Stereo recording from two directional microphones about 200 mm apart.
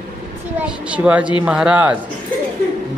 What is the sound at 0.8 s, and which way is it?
A man's voice, 5° right (ahead or behind).